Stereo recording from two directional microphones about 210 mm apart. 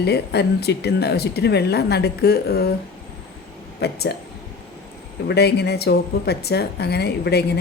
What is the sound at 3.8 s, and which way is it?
Speech, 50° left (ahead or behind).